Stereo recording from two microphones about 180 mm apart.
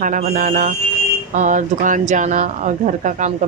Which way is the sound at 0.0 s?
50° right (ahead or behind).